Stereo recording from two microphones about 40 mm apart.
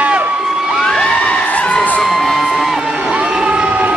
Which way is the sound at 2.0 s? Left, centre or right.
Centre.